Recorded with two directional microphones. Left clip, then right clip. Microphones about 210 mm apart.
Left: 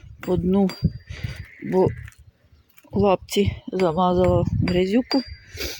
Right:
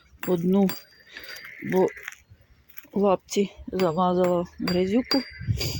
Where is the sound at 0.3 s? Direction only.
10° left (ahead or behind).